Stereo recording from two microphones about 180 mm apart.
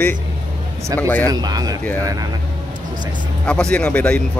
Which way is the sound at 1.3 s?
20° right (ahead or behind).